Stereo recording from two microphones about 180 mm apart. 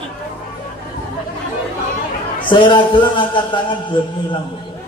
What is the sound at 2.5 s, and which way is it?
Mantra, 25° left (ahead or behind).